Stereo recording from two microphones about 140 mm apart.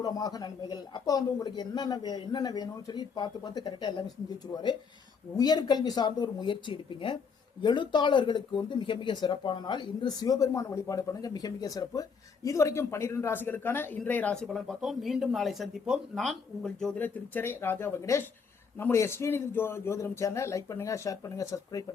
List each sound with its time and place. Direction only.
0.0 s speech: 25° left (ahead or behind)